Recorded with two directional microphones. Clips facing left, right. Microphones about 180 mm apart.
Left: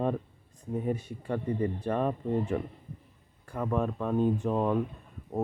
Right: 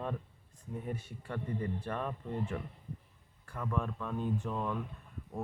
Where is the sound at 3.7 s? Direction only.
30° left (ahead or behind).